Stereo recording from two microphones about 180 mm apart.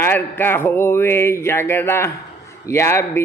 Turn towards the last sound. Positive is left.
turn(degrees=15)  # may be behind; listen again after turning